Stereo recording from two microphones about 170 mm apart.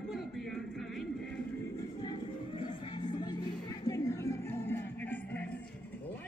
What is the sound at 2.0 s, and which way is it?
Music, 25° left (ahead or behind).